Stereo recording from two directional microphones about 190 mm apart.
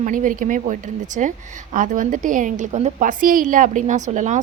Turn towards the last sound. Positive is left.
turn(degrees=-40)  # may be behind; listen again after turning